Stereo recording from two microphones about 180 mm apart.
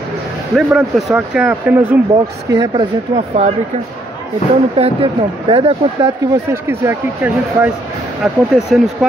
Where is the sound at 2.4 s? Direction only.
20° right (ahead or behind).